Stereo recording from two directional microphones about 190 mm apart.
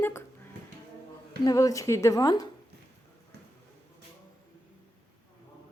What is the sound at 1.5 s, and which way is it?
Speech, 15° left (ahead or behind).